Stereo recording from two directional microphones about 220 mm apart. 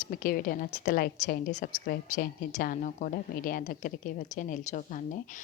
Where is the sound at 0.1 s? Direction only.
40° left (ahead or behind).